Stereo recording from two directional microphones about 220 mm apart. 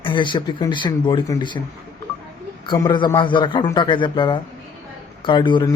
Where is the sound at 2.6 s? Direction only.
20° left (ahead or behind).